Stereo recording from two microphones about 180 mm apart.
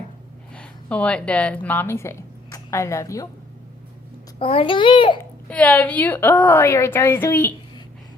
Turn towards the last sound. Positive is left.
turn(degrees=10)  # may be behind; listen again after turning